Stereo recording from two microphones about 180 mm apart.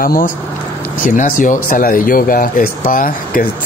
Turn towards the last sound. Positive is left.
turn(degrees=50)  # may be behind; listen again after turning